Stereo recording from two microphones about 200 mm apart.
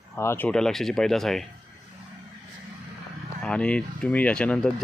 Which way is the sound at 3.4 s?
5° left (ahead or behind).